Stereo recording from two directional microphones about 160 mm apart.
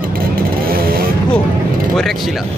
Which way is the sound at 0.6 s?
70° right (ahead or behind).